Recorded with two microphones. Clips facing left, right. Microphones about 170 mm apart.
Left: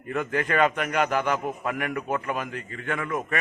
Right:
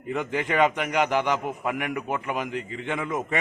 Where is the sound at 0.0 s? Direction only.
15° right (ahead or behind).